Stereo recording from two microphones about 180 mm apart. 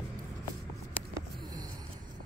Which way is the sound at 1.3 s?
20° right (ahead or behind).